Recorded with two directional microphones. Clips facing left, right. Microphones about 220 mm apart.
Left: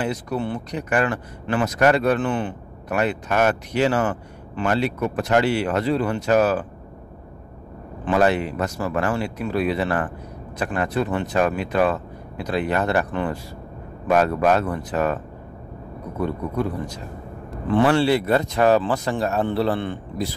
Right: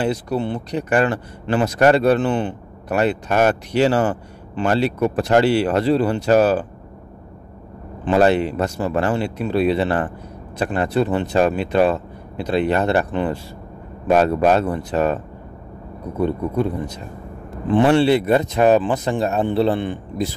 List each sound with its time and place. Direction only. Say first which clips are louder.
0.0 s speech: right 4 dB; 30° right (ahead or behind)
8.0 s speech: right 4 dB; 30° right (ahead or behind)
16.2 s speech: right 4 dB; 25° right (ahead or behind)